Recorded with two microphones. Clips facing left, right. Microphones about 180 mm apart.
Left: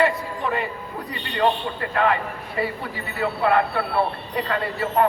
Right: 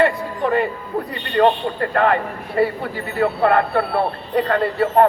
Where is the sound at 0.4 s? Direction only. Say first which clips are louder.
Right 8 dB; 55° right (ahead or behind).